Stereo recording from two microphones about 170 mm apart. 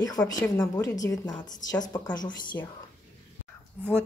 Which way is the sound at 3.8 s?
5° right (ahead or behind).